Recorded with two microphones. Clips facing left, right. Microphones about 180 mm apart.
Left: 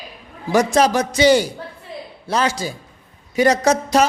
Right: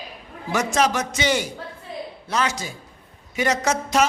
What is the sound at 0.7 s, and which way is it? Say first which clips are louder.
A man's voice: left 5 dB; 35° left (ahead or behind).